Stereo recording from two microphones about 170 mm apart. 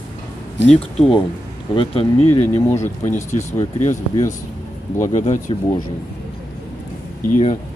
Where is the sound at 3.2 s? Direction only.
45° left (ahead or behind).